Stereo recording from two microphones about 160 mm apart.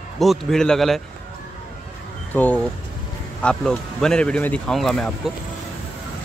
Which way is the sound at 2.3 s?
10° left (ahead or behind).